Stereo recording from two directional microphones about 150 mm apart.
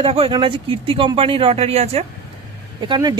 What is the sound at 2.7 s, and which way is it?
Speech, 30° right (ahead or behind).